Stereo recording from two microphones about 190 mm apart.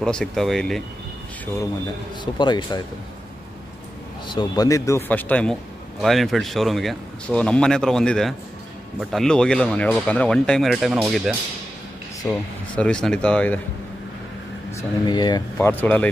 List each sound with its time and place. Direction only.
0.0 s a man's voice: 5° left (ahead or behind)
2.3 s speech: 25° left (ahead or behind)
4.3 s a man's voice: 20° left (ahead or behind); by 13.6 s 5° left (ahead or behind)
14.8 s speech: 20° left (ahead or behind)
15.5 s speech: 10° left (ahead or behind)